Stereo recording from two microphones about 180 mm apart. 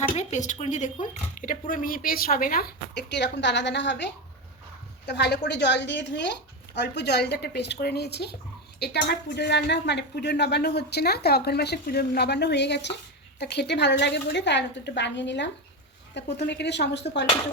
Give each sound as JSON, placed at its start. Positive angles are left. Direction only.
{"t": 0.2, "sound": "speech", "side_deg": 40}